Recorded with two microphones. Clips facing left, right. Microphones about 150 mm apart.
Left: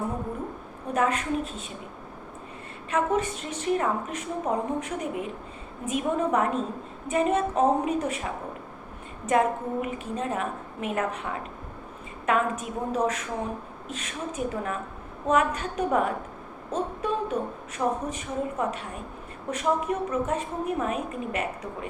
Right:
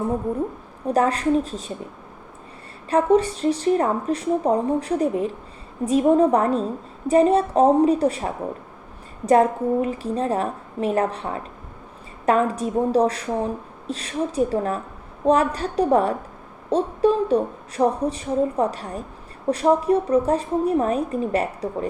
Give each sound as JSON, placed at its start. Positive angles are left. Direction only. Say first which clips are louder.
{"t": 0.9, "sound": "a woman's voice", "louder": "right 6 dB", "side_deg": -35}
{"t": 2.9, "sound": "a woman's voice", "louder": "right 8 dB", "side_deg": -35}